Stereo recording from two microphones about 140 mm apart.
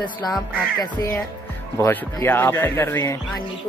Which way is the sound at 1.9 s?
15° left (ahead or behind).